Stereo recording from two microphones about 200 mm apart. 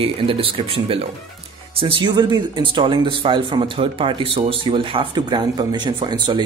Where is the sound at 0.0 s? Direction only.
25° right (ahead or behind).